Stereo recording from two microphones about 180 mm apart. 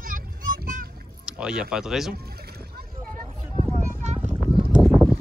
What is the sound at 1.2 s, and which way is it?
Speech, 5° right (ahead or behind).